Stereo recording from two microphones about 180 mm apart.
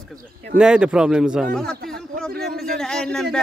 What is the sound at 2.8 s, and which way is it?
Speech, 5° left (ahead or behind).